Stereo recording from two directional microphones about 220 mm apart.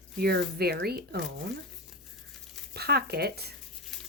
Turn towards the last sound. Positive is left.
turn(degrees=0)  # may be behind; listen again after turning